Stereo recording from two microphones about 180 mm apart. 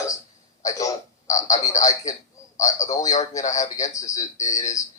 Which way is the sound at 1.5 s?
40° left (ahead or behind).